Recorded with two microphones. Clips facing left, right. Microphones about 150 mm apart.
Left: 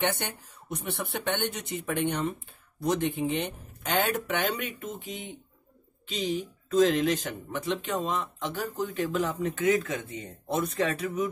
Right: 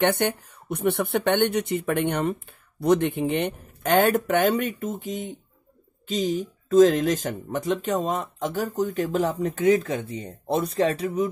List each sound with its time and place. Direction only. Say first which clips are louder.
0.0 s speech: right 8 dB; 55° right (ahead or behind); by 11.2 s 30° right (ahead or behind)